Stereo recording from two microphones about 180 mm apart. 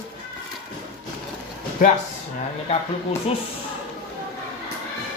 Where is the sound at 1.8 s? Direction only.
50° left (ahead or behind).